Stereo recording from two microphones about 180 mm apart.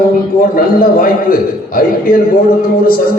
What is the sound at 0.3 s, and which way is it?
A man's voice, 50° left (ahead or behind).